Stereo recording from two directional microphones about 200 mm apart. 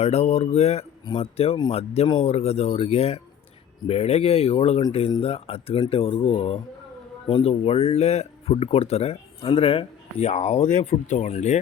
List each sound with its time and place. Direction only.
0.0 s speech: 30° left (ahead or behind)